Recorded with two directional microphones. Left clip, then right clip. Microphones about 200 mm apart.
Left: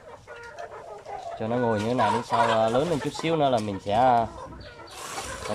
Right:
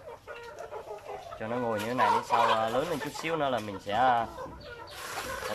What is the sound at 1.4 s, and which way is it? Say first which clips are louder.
Speech: left 6 dB; 20° left (ahead or behind).